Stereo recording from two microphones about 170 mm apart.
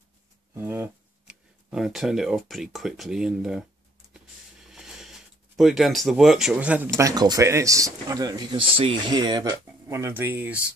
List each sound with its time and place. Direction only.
0.6 s speech: 15° right (ahead or behind)
4.6 s a sound: 5° right (ahead or behind)
7.0 s speech: 20° right (ahead or behind)